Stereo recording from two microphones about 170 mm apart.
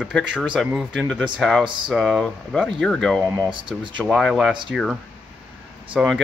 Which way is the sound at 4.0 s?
Centre (ahead or behind).